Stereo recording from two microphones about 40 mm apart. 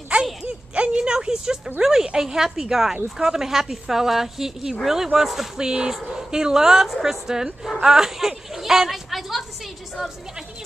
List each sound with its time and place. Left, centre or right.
0.7 s a sound: right
1.8 s speech: centre
5.6 s speech: right; by 9.4 s centre